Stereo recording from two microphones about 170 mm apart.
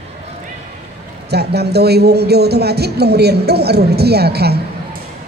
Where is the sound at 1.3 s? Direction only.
70° right (ahead or behind).